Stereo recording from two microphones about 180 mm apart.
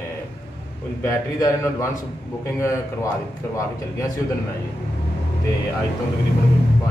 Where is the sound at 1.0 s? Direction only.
15° left (ahead or behind).